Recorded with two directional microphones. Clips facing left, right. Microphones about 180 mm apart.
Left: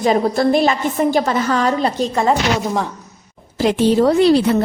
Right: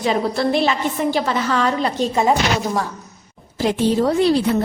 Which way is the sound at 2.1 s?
5° right (ahead or behind).